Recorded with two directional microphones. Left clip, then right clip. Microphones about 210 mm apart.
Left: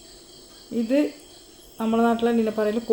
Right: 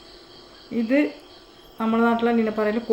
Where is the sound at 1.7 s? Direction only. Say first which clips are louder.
Right 1 dB; 5° right (ahead or behind).